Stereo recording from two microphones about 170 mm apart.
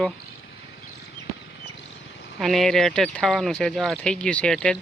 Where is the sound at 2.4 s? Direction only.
Centre (ahead or behind).